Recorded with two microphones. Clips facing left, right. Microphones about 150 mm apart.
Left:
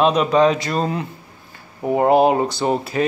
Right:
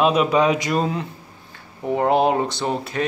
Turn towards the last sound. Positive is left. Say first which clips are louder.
# left 4 dB
turn(degrees=5)  # may be behind; listen again after turning